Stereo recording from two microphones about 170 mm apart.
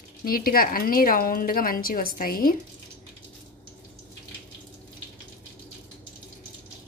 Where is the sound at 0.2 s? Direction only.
60° left (ahead or behind).